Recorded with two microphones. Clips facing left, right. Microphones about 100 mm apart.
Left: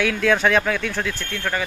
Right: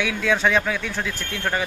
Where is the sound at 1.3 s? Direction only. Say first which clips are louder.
Even; 20° right (ahead or behind).